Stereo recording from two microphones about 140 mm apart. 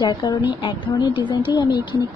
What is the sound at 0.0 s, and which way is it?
Speech, 30° left (ahead or behind).